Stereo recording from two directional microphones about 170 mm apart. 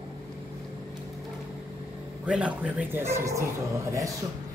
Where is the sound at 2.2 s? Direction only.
5° right (ahead or behind).